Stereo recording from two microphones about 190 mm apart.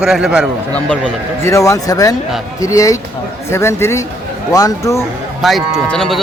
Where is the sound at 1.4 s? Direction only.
15° left (ahead or behind).